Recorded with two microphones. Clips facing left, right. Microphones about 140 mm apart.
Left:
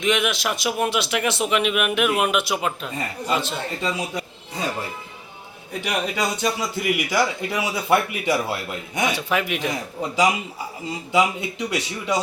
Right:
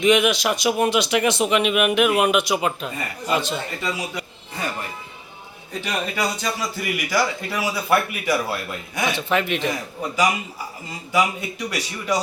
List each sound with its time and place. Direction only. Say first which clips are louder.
0.0 s speech: right 5 dB; centre (ahead or behind)
4.1 s a sound: left 2 dB; 25° left (ahead or behind)
5.8 s a man's voice: left 1 dB; 15° left (ahead or behind)
9.0 s speech: right 1 dB; 10° left (ahead or behind)
11.1 s a man's voice: left 1 dB; 25° left (ahead or behind)